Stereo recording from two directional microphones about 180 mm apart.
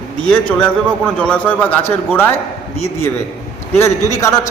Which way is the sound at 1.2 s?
10° left (ahead or behind).